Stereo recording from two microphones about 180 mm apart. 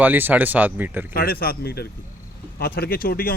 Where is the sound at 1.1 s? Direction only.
55° left (ahead or behind).